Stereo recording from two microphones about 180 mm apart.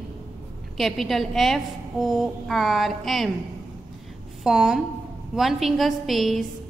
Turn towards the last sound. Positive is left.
turn(degrees=0)  # may be behind; listen again after turning